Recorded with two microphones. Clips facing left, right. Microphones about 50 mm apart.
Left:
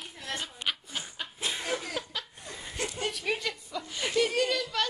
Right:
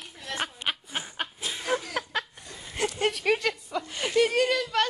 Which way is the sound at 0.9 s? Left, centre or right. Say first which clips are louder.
Right 4 dB; right.